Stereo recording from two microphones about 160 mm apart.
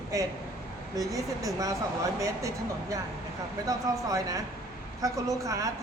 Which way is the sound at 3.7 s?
20° right (ahead or behind).